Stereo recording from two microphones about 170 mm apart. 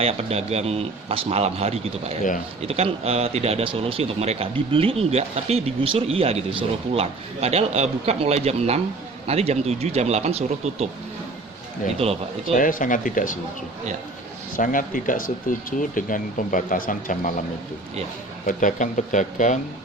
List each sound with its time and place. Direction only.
0.0 s speech: 35° right (ahead or behind)
12.0 s speech: 35° right (ahead or behind)
12.5 s speech: 50° left (ahead or behind)
14.5 s speech: 55° left (ahead or behind)
18.4 s speech: 50° left (ahead or behind)